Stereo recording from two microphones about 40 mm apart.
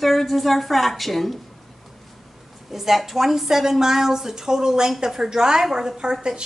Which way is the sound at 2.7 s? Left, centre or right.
Centre.